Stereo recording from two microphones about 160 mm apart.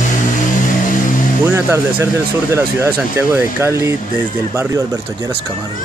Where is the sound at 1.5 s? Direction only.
15° right (ahead or behind).